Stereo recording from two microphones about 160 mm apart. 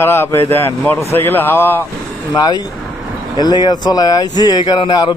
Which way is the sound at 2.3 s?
25° left (ahead or behind).